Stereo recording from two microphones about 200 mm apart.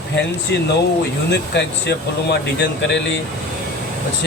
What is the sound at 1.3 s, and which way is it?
Speech, 60° left (ahead or behind).